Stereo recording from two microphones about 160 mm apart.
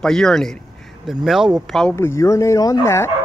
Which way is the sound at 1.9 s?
15° left (ahead or behind).